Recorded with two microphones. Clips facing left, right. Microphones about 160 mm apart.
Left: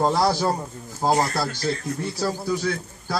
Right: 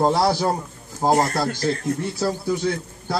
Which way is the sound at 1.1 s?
45° right (ahead or behind).